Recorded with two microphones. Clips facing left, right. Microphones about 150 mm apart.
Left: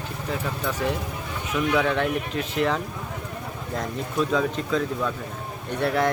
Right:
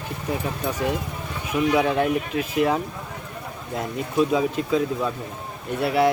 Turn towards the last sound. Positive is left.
turn(degrees=-10)  # may be behind; listen again after turning